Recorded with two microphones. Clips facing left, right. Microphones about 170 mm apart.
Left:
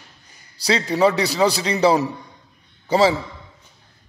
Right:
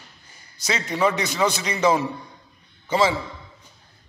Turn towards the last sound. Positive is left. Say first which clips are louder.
# left 4 dB
turn(degrees=35)  # may be behind; listen again after turning